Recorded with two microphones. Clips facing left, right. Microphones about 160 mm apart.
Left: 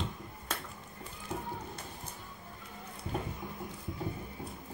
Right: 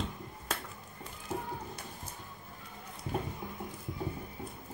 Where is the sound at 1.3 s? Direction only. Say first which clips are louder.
Right 2 dB; 5° right (ahead or behind).